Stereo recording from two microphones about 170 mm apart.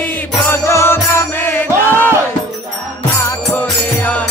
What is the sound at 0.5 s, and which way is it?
Music, 15° left (ahead or behind).